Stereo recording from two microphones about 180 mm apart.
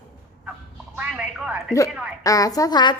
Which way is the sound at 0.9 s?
5° right (ahead or behind).